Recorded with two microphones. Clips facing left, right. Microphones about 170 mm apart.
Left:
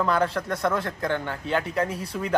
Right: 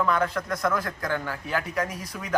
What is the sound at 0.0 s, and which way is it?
A man's voice, 30° left (ahead or behind).